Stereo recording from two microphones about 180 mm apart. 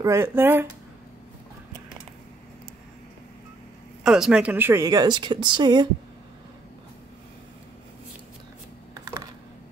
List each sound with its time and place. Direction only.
0.0 s speech: 15° right (ahead or behind)
4.0 s speech: 5° right (ahead or behind); by 5.9 s 25° right (ahead or behind)
8.9 s typing: 20° right (ahead or behind)